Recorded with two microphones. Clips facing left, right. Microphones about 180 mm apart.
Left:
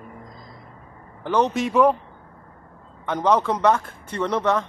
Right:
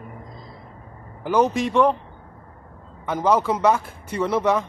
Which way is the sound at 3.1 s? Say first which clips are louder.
Even; 5° right (ahead or behind).